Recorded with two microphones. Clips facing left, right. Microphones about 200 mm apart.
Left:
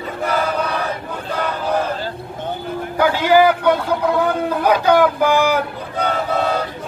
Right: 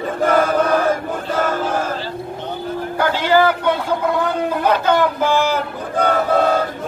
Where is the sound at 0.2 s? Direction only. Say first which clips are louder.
Right 5 dB; 50° right (ahead or behind).